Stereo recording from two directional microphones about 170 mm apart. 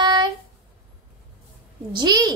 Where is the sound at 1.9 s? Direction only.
25° right (ahead or behind).